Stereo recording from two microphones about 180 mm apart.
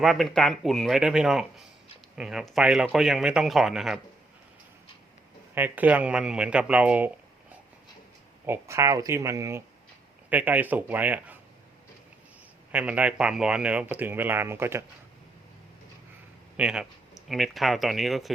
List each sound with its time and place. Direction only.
0.0 s speech: centre (ahead or behind)
5.5 s speech: 10° right (ahead or behind)
8.4 s speech: 15° right (ahead or behind)
12.7 s speech: 5° right (ahead or behind)
16.6 s speech: 5° right (ahead or behind)